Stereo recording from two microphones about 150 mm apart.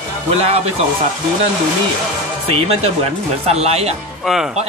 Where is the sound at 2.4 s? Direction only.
40° right (ahead or behind).